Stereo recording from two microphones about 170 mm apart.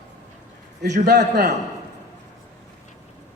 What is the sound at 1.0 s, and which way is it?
Speech, 75° right (ahead or behind).